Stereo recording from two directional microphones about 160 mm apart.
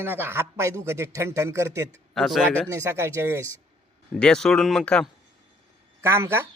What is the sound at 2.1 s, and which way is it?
Speech, centre (ahead or behind).